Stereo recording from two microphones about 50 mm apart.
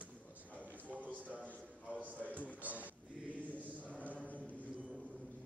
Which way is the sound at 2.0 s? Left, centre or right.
Right.